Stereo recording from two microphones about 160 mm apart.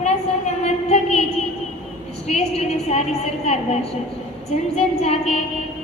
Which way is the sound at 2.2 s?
45° left (ahead or behind).